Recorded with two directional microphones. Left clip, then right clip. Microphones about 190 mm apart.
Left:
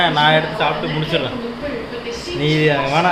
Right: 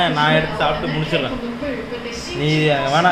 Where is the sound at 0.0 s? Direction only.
30° left (ahead or behind).